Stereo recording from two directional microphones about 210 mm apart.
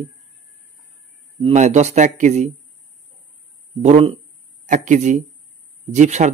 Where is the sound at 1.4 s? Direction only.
30° right (ahead or behind).